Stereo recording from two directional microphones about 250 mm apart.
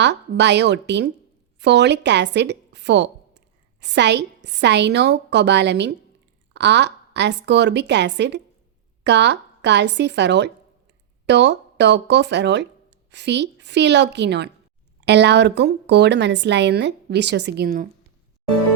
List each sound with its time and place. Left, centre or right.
0.0 s a woman's voice: right